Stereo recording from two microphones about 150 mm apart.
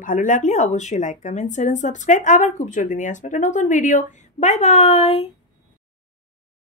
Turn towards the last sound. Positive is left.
turn(degrees=40)  # may be behind; listen again after turning